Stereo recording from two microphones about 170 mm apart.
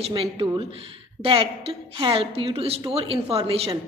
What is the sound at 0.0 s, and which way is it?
A woman's voice, 35° right (ahead or behind).